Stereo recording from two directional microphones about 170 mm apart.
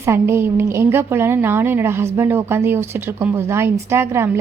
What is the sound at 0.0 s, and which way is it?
A woman's voice, 15° right (ahead or behind).